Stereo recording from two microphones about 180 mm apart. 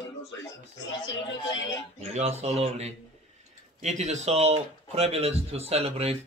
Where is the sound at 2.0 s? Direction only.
35° right (ahead or behind).